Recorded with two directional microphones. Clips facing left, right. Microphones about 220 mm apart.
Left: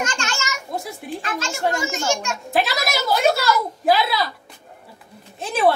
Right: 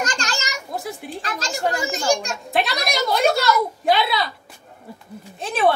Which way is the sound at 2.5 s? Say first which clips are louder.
Left 1 dB; centre (ahead or behind).